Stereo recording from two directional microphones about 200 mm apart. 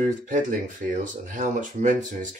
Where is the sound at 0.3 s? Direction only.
40° right (ahead or behind).